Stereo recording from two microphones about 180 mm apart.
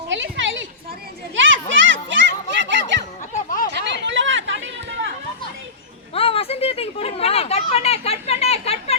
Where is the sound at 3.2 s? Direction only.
50° left (ahead or behind).